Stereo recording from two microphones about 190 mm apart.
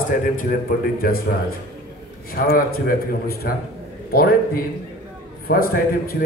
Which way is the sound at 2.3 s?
50° left (ahead or behind).